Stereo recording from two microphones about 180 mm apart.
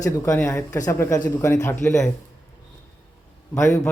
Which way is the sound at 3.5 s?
15° left (ahead or behind).